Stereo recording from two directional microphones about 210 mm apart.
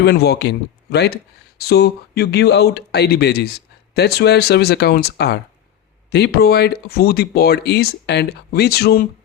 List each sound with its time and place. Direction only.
0.0 s speech: 50° left (ahead or behind)